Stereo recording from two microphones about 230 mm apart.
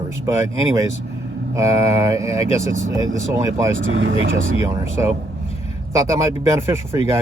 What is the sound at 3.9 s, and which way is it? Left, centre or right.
Speech, right.